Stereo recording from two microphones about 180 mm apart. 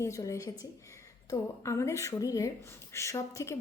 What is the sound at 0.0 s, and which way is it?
A woman's voice, 15° left (ahead or behind).